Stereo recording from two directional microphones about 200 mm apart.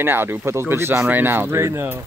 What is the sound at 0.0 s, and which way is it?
Speech, 10° right (ahead or behind).